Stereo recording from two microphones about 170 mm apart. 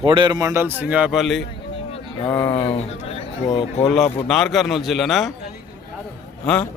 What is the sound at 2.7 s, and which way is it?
Speech, 35° left (ahead or behind).